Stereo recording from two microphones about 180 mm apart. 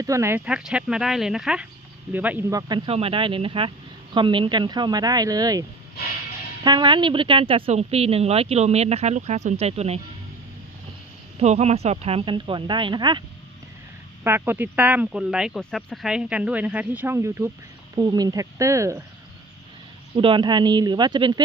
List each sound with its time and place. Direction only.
0.0 s speech: 15° right (ahead or behind)
2.6 s speech: 25° right (ahead or behind)
6.7 s speech: 25° right (ahead or behind)
11.3 s speech: 35° right (ahead or behind)
14.3 s speech: 10° right (ahead or behind)
20.1 s speech: 25° right (ahead or behind)